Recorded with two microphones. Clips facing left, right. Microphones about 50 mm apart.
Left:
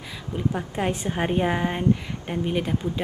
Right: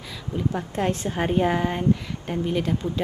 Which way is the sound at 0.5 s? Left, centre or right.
Centre.